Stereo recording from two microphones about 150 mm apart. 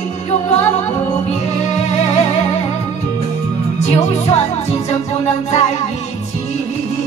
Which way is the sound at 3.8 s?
50° left (ahead or behind).